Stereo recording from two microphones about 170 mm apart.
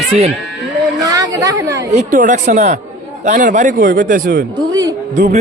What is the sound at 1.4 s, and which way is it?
Speech, 20° right (ahead or behind).